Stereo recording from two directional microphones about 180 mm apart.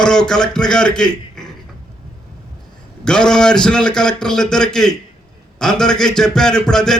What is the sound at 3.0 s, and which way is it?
A man's voice, 5° left (ahead or behind).